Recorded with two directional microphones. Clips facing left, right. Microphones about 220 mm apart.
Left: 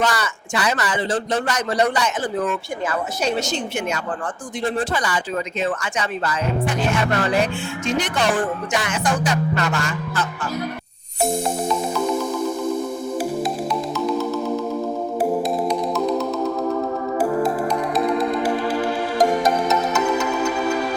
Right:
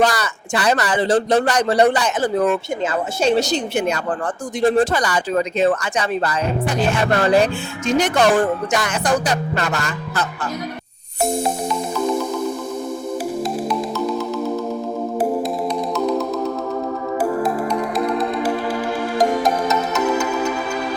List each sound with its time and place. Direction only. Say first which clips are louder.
0.0 s speech: right 4 dB; 35° right (ahead or behind)
19.2 s music: even; centre (ahead or behind)